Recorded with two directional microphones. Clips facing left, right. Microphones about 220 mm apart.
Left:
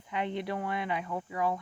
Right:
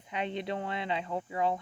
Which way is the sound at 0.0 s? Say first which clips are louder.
Left 1 dB; 20° right (ahead or behind).